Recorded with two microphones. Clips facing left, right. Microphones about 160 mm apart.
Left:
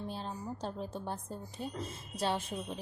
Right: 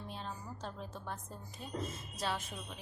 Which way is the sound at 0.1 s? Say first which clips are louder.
Left 5 dB; 35° left (ahead or behind).